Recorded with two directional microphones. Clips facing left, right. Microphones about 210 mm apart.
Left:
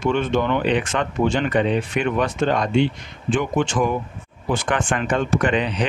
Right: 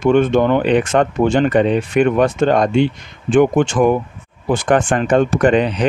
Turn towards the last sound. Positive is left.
turn(degrees=-45)  # may be behind; listen again after turning